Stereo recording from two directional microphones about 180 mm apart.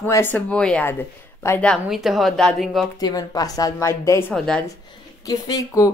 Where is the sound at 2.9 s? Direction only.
20° left (ahead or behind); by 4.6 s 5° left (ahead or behind).